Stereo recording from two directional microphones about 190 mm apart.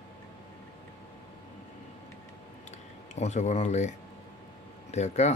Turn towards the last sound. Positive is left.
turn(degrees=35)  # may be behind; listen again after turning